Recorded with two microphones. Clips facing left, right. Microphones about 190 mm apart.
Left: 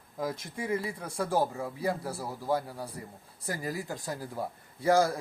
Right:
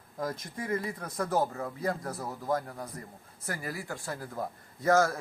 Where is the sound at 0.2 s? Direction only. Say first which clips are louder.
Left 1 dB; 10° left (ahead or behind).